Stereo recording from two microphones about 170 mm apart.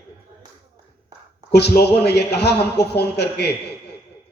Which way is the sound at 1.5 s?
75° left (ahead or behind).